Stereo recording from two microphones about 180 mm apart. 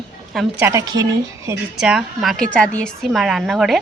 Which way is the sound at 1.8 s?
5° right (ahead or behind).